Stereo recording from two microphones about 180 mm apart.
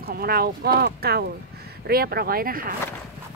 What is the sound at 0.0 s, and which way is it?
Speech, 60° right (ahead or behind).